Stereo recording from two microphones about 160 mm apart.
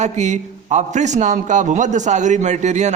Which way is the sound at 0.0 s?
45° right (ahead or behind).